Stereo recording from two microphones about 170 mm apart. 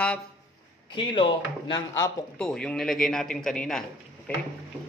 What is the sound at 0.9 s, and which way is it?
Speech, 30° left (ahead or behind).